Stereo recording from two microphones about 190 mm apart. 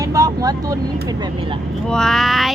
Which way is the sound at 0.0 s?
15° right (ahead or behind).